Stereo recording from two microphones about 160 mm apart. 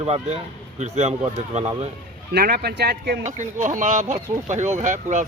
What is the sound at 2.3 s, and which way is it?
Speech, 75° right (ahead or behind).